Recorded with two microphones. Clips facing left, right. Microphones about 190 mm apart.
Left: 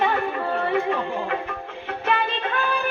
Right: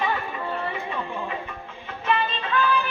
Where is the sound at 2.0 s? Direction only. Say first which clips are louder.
Left 1 dB; 60° left (ahead or behind).